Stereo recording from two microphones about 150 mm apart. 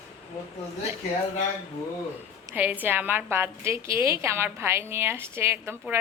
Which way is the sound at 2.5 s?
25° right (ahead or behind).